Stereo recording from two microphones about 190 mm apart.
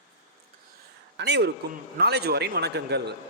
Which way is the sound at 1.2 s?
65° right (ahead or behind).